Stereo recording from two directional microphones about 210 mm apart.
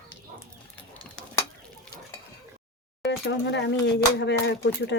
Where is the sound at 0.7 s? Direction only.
5° left (ahead or behind).